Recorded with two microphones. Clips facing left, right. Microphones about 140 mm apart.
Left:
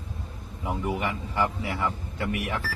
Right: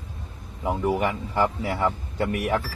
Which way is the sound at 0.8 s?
45° right (ahead or behind).